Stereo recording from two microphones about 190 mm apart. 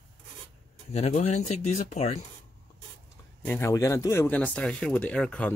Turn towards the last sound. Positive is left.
turn(degrees=5)  # may be behind; listen again after turning